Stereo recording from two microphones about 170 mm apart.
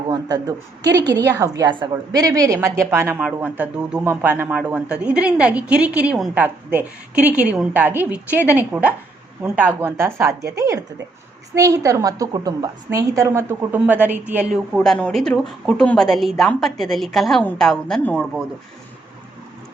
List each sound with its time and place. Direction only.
0.1 s a woman's voice: 20° right (ahead or behind)
3.2 s a woman's voice: 5° right (ahead or behind)
14.8 s a woman's voice: 5° left (ahead or behind)